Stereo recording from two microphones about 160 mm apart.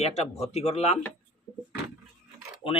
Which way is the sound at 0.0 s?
40° left (ahead or behind).